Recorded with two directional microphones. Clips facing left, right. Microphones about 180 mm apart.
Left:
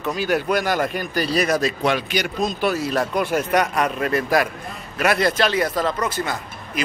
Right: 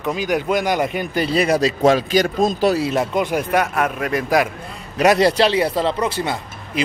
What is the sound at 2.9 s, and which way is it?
Speech, 20° right (ahead or behind).